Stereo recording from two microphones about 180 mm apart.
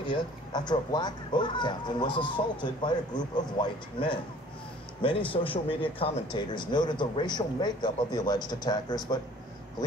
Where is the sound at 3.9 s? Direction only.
25° left (ahead or behind).